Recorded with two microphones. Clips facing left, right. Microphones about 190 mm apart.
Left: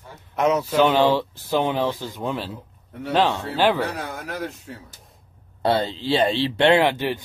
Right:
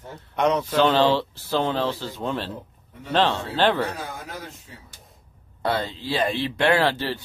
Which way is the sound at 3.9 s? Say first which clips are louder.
Left 3 dB; 70° left (ahead or behind).